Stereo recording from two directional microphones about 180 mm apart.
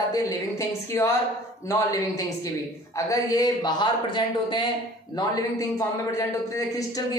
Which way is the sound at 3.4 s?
25° left (ahead or behind).